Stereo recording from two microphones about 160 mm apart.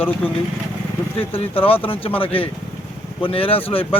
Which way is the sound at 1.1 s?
35° left (ahead or behind).